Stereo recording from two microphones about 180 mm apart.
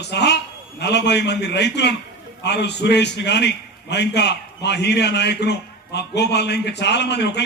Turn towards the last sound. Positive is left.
turn(degrees=70)  # may be behind; listen again after turning